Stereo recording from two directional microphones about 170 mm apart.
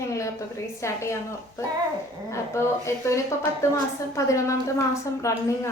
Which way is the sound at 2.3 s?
15° left (ahead or behind).